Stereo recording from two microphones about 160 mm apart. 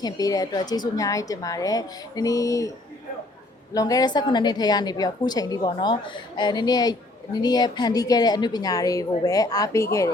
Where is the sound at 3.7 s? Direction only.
20° left (ahead or behind).